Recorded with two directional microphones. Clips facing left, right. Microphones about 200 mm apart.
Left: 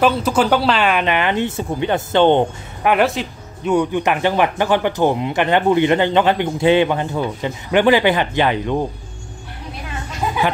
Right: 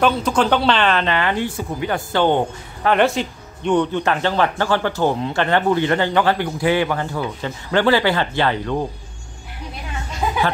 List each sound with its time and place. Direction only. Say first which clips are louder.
0.0 s speech: left 2 dB; 5° left (ahead or behind); by 2.9 s 20° left (ahead or behind)
2.9 s speech: even; 5° left (ahead or behind)